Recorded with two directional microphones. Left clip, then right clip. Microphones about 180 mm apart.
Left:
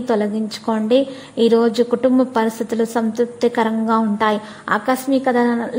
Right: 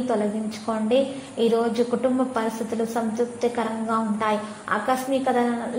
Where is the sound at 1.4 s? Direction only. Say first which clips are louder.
Left 7 dB; 35° left (ahead or behind).